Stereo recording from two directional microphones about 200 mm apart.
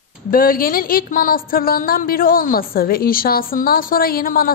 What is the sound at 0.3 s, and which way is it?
A woman's voice, 45° left (ahead or behind).